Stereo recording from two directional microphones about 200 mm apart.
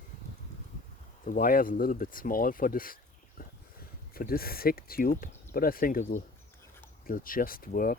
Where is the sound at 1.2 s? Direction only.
45° left (ahead or behind).